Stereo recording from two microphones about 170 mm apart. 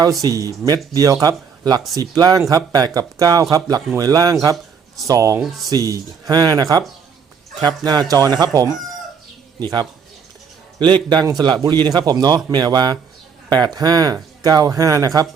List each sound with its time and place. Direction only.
0.2 s speech: 20° right (ahead or behind)
11.1 s speech: 25° right (ahead or behind)